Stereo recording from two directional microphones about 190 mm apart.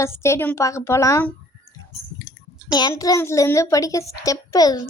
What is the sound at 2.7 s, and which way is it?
A woman's voice, 20° left (ahead or behind).